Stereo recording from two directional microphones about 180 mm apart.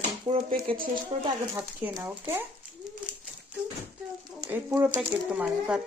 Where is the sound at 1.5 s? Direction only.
10° right (ahead or behind).